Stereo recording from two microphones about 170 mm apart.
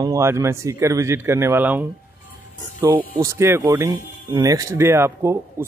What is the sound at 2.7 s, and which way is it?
A man's voice, 25° right (ahead or behind).